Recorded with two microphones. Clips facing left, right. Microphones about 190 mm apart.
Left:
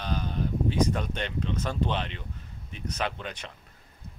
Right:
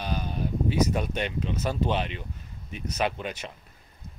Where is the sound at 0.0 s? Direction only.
10° right (ahead or behind).